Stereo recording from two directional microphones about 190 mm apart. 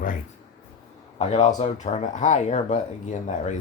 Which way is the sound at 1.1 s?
35° left (ahead or behind).